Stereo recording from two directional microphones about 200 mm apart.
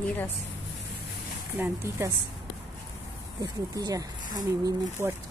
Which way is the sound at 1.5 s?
15° right (ahead or behind).